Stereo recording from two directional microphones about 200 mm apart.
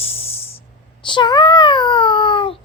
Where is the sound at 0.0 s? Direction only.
30° left (ahead or behind).